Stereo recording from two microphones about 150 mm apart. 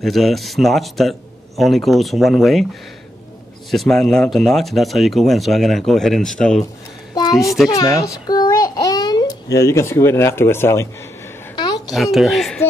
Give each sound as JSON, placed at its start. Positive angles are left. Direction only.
{"t": 0.0, "sound": "speech", "side_deg": 0}
{"t": 3.7, "sound": "speech", "side_deg": 0}
{"t": 7.2, "sound": "a sound", "side_deg": 25}
{"t": 7.4, "sound": "speech", "side_deg": 0}
{"t": 7.7, "sound": "a child's voice", "side_deg": 20}
{"t": 11.9, "sound": "speech", "side_deg": 0}